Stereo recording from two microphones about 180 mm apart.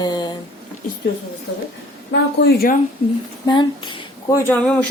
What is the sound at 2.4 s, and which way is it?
Speech, 55° left (ahead or behind).